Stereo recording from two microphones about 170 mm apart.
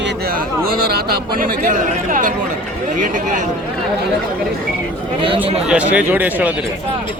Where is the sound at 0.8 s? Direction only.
65° right (ahead or behind); by 3.5 s 50° right (ahead or behind).